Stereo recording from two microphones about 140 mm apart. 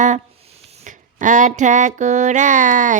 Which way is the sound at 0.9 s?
65° right (ahead or behind).